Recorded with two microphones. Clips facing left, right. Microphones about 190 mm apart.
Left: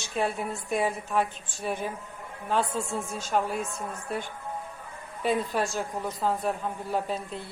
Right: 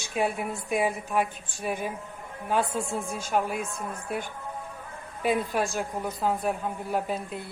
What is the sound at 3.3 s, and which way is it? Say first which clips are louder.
Speech: even; 5° right (ahead or behind).